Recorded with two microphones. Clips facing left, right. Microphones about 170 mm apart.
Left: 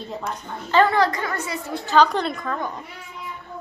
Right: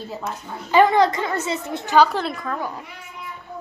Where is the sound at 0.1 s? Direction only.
5° right (ahead or behind); by 2.0 s 20° right (ahead or behind).